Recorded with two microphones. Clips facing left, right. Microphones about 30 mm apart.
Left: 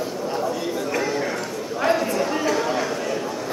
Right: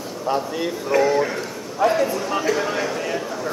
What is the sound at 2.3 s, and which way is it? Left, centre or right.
Speech, centre.